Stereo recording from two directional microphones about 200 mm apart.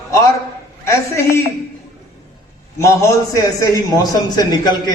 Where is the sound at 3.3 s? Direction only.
15° left (ahead or behind).